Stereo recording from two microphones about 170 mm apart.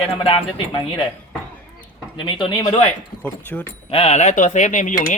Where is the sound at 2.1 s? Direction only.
30° left (ahead or behind).